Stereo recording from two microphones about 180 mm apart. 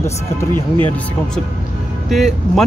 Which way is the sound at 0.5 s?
30° right (ahead or behind).